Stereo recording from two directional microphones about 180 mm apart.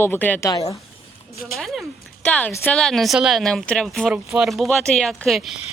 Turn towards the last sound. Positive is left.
turn(degrees=0)  # may be behind; listen again after turning